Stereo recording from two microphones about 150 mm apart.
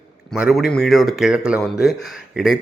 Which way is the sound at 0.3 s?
5° right (ahead or behind).